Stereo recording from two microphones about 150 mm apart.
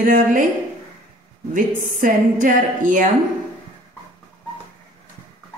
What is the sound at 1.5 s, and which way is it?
A woman's voice, 60° right (ahead or behind).